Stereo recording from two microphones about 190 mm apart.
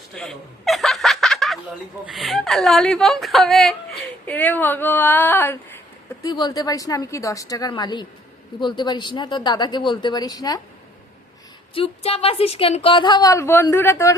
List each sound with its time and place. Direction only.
0.2 s snicker: centre (ahead or behind)
2.1 s speech: centre (ahead or behind)
6.2 s a woman's voice: 20° left (ahead or behind)
11.7 s a woman's voice: 30° left (ahead or behind); by 14.2 s 15° left (ahead or behind)